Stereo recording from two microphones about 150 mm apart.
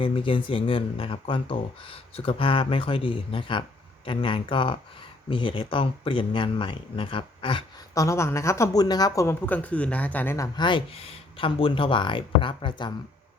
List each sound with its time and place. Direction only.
0.0 s speech: 35° left (ahead or behind)
7.9 s speech: 20° left (ahead or behind)
10.7 s speech: 35° left (ahead or behind)